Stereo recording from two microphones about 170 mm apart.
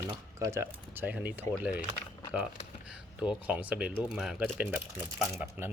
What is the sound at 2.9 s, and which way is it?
Speech, 5° right (ahead or behind).